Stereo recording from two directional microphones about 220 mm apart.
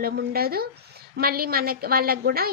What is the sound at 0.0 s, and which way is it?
A woman's voice, 45° right (ahead or behind).